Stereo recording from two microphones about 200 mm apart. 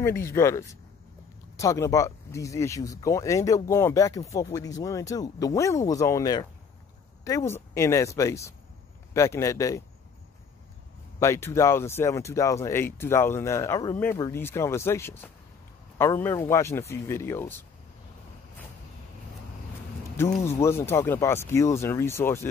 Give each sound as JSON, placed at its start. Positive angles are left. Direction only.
{"t": 0.0, "sound": "speech", "side_deg": 15}
{"t": 11.1, "sound": "speech", "side_deg": 15}
{"t": 20.4, "sound": "speech", "side_deg": 15}